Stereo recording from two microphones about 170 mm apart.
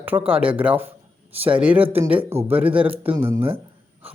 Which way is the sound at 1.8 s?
35° right (ahead or behind).